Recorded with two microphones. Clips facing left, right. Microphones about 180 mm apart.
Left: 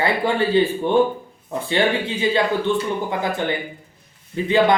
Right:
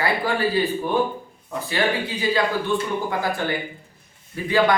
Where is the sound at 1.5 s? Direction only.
25° left (ahead or behind).